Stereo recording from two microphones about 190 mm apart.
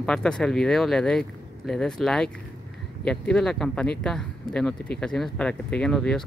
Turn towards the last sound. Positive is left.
turn(degrees=5)  # may be behind; listen again after turning